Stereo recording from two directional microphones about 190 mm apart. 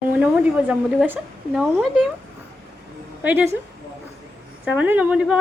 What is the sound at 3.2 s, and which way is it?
Speech, 10° right (ahead or behind).